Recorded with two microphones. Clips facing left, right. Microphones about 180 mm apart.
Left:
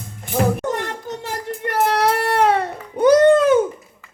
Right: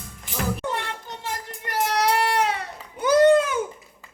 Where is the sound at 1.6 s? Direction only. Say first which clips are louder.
Left 5 dB; 55° left (ahead or behind).